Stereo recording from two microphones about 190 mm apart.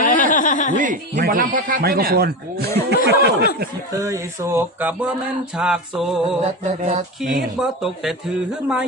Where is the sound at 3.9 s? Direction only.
15° right (ahead or behind).